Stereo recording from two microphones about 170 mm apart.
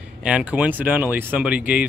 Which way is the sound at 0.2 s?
5° right (ahead or behind).